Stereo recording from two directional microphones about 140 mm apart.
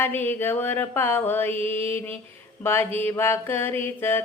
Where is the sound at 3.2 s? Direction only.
15° left (ahead or behind).